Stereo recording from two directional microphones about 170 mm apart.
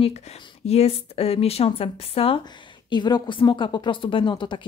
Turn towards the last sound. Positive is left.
turn(degrees=30)  # may be behind; listen again after turning